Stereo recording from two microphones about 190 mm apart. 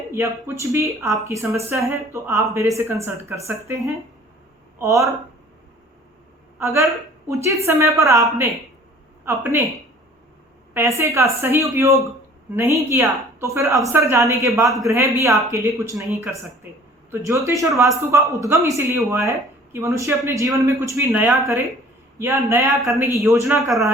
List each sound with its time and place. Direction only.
0.1 s speech: 15° right (ahead or behind)
6.6 s speech: 15° right (ahead or behind)
10.8 s speech: 15° right (ahead or behind)
23.6 s a man's voice: centre (ahead or behind)